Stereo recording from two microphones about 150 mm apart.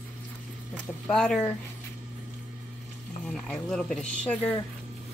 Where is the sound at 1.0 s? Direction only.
5° left (ahead or behind).